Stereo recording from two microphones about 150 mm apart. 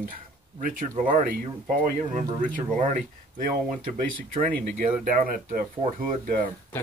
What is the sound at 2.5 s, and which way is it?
Speech, 65° right (ahead or behind).